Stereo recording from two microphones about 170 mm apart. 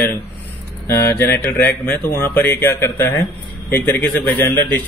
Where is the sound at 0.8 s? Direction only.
15° left (ahead or behind).